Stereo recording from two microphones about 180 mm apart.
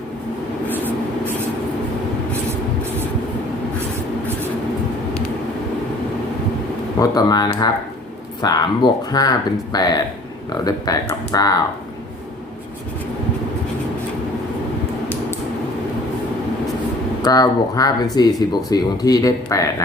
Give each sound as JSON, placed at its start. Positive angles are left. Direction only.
{"t": 7.0, "sound": "speech", "side_deg": 20}
{"t": 17.2, "sound": "speech", "side_deg": 20}